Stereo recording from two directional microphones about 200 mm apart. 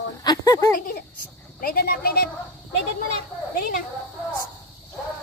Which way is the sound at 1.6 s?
50° left (ahead or behind).